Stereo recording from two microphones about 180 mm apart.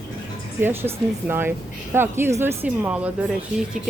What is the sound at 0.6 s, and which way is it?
Speech, 10° right (ahead or behind).